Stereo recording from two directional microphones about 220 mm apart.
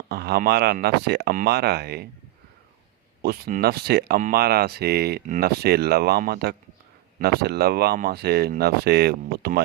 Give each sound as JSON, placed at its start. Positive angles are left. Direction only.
{"t": 0.1, "sound": "speech", "side_deg": -45}
{"t": 3.2, "sound": "speech", "side_deg": -45}